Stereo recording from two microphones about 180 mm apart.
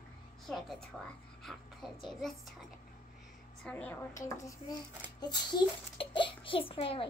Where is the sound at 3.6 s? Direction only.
10° left (ahead or behind); by 7.1 s 30° left (ahead or behind).